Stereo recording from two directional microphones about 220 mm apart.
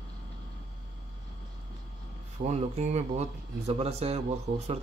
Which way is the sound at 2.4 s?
30° right (ahead or behind).